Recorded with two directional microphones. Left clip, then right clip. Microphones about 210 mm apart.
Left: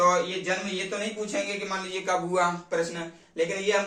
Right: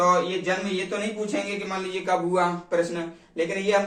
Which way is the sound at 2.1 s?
15° left (ahead or behind).